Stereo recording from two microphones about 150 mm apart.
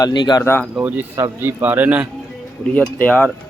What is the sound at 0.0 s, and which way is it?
Speech, 30° left (ahead or behind).